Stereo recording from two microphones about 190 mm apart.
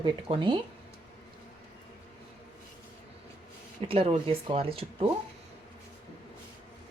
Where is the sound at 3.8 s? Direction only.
30° right (ahead or behind).